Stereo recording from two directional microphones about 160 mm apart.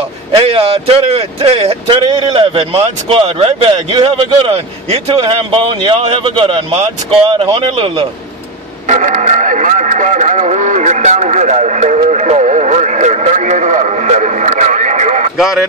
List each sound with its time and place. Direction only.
0.5 s speech: 35° right (ahead or behind)
8.8 s speech: 50° right (ahead or behind)
15.3 s speech: centre (ahead or behind)